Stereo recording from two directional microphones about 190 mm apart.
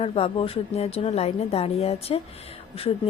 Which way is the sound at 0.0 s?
30° left (ahead or behind).